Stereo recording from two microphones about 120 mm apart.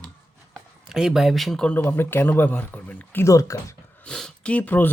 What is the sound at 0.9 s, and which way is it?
Speech, 5° right (ahead or behind).